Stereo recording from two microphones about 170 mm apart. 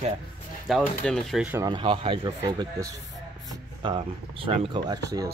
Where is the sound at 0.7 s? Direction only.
Centre (ahead or behind).